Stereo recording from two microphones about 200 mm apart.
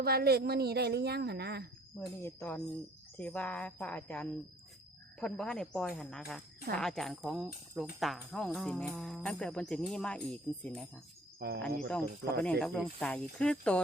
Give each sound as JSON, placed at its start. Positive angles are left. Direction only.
{"t": 0.0, "sound": "a woman's voice", "side_deg": -50}
{"t": 2.0, "sound": "speech", "side_deg": 10}
{"t": 11.3, "sound": "speech", "side_deg": -55}
{"t": 12.4, "sound": "speech", "side_deg": 5}